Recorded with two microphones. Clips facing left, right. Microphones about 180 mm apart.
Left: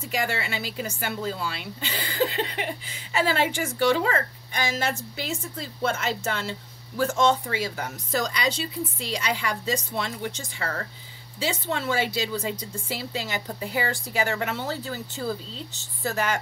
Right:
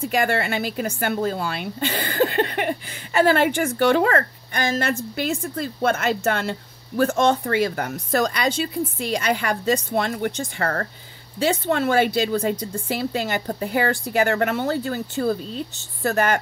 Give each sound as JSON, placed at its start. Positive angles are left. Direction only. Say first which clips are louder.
{"t": 0.0, "sound": "a woman's voice", "louder": "right 7 dB", "side_deg": -55}